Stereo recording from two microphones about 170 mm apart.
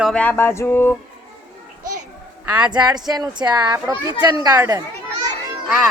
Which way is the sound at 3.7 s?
15° right (ahead or behind).